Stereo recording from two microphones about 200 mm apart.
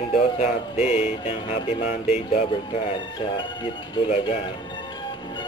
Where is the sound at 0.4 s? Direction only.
30° left (ahead or behind).